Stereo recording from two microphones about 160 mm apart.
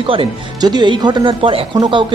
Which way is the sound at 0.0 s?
35° right (ahead or behind).